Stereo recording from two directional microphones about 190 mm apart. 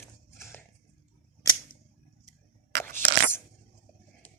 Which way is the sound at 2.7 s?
60° right (ahead or behind).